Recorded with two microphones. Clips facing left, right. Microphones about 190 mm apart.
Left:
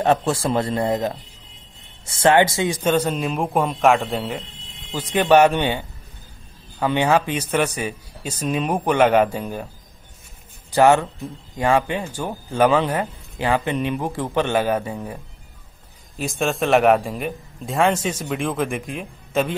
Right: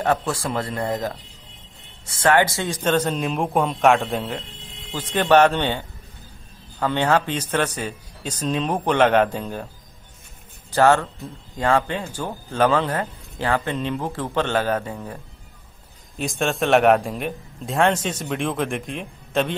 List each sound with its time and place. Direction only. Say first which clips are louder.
0.0 s speech: left 3 dB; 25° left (ahead or behind); by 9.7 s 10° left (ahead or behind)
10.7 s speech: left 2 dB; 15° left (ahead or behind)
16.2 s a man's voice: left 1 dB; centre (ahead or behind)